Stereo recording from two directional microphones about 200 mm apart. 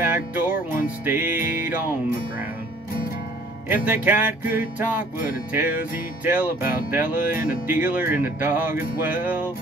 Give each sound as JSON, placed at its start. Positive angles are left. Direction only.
{"t": 0.0, "sound": "music", "side_deg": -10}
{"t": 3.6, "sound": "music", "side_deg": -10}